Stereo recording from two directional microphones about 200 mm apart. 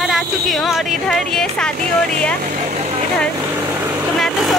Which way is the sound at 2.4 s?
35° right (ahead or behind).